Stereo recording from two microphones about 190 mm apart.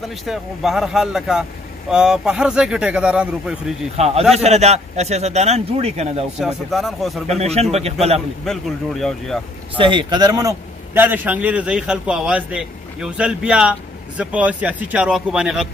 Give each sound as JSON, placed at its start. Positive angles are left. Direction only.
{"t": 0.2, "sound": "a man's voice", "side_deg": 0}
{"t": 3.9, "sound": "a man's voice", "side_deg": -35}
{"t": 6.4, "sound": "a man's voice", "side_deg": 0}
{"t": 7.2, "sound": "a man's voice", "side_deg": -35}
{"t": 8.5, "sound": "a man's voice", "side_deg": 0}
{"t": 9.8, "sound": "speech", "side_deg": -25}
{"t": 11.0, "sound": "a man's voice", "side_deg": -10}